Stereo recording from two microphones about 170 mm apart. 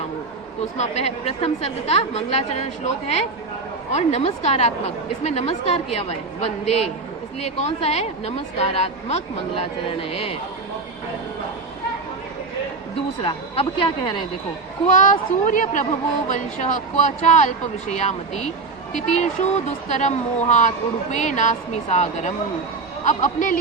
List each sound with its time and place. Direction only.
0.8 s a woman's voice: 40° left (ahead or behind)
13.2 s a woman's voice: 30° left (ahead or behind)
14.9 s a woman's voice: 50° left (ahead or behind)